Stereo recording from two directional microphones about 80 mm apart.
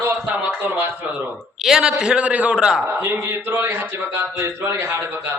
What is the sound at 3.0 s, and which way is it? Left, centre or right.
Speech, right.